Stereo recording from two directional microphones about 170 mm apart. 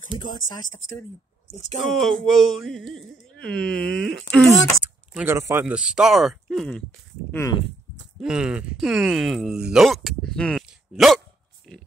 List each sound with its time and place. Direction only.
1.9 s speech: centre (ahead or behind)
5.1 s speech: 15° right (ahead or behind)
7.2 s speech: 15° left (ahead or behind)
8.2 s speech: 5° right (ahead or behind)